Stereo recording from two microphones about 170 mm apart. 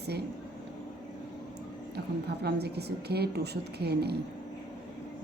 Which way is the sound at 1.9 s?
75° right (ahead or behind).